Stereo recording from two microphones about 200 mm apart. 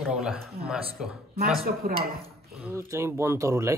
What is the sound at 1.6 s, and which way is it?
Speech, 50° right (ahead or behind).